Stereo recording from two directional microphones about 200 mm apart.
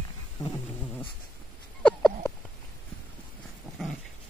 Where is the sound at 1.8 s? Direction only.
5° left (ahead or behind).